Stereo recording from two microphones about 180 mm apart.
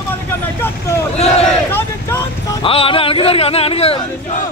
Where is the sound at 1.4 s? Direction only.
10° left (ahead or behind).